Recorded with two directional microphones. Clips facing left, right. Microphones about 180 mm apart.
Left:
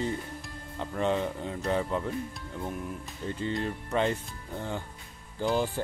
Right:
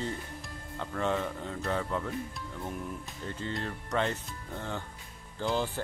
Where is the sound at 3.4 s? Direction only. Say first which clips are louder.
Left 5 dB; 15° left (ahead or behind).